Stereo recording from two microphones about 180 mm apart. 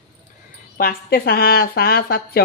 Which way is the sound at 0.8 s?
55° left (ahead or behind).